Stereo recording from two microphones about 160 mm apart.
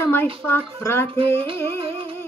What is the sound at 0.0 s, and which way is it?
Speech, 15° left (ahead or behind).